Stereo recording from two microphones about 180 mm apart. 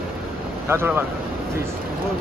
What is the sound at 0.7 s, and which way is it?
Speech, 10° right (ahead or behind).